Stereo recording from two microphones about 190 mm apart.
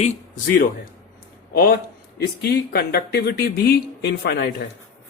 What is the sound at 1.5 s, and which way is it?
Speech, 55° left (ahead or behind).